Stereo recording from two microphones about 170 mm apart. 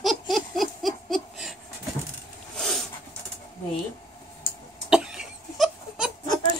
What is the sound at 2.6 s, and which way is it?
Dog, centre (ahead or behind).